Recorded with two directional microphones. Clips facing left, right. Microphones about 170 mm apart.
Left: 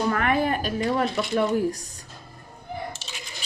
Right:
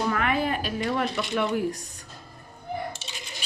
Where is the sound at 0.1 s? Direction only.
50° left (ahead or behind).